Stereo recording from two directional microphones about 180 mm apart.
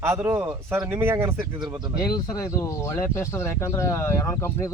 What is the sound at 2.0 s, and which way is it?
Speech, 20° left (ahead or behind).